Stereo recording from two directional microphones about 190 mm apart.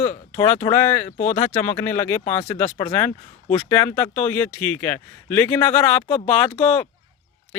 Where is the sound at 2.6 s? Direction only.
25° left (ahead or behind).